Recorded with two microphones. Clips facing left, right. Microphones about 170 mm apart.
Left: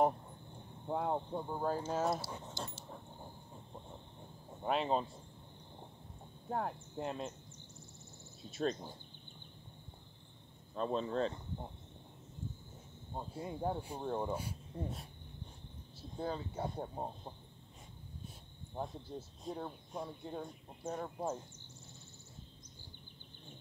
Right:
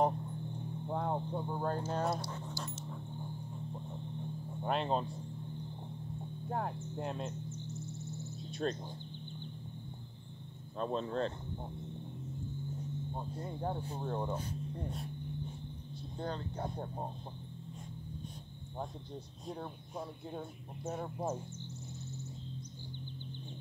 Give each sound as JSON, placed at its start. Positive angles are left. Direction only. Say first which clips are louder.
{"t": 0.8, "sound": "speech", "louder": "left 1 dB", "side_deg": 5}
{"t": 2.3, "sound": "speech", "louder": "right 2 dB", "side_deg": 25}
{"t": 4.6, "sound": "speech", "louder": "even", "side_deg": 0}
{"t": 6.5, "sound": "speech", "louder": "even", "side_deg": 0}
{"t": 8.4, "sound": "speech", "louder": "left 1 dB", "side_deg": 0}
{"t": 10.8, "sound": "speech", "louder": "even", "side_deg": 0}
{"t": 13.1, "sound": "speech", "louder": "right 1 dB", "side_deg": 10}
{"t": 16.2, "sound": "speech", "louder": "left 1 dB", "side_deg": 5}
{"t": 18.8, "sound": "speech", "louder": "left 1 dB", "side_deg": 0}